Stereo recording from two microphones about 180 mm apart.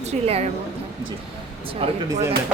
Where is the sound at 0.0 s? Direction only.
35° right (ahead or behind).